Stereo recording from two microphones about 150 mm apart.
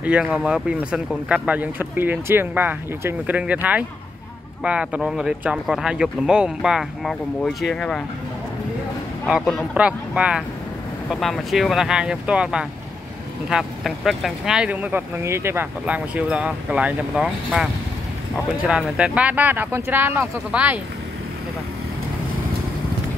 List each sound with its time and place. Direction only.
0.0 s speech: 10° right (ahead or behind)
9.3 s speech: centre (ahead or behind)
18.7 s speech: 5° right (ahead or behind)